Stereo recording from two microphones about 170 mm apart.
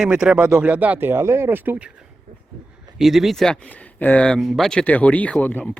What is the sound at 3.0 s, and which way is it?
Speech, centre (ahead or behind).